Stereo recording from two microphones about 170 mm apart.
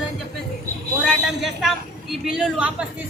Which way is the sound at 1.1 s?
Centre (ahead or behind).